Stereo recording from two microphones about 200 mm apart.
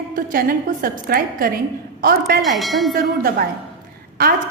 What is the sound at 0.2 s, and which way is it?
A woman's voice, 45° right (ahead or behind).